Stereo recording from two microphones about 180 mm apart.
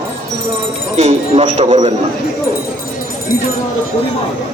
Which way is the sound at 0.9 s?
40° right (ahead or behind).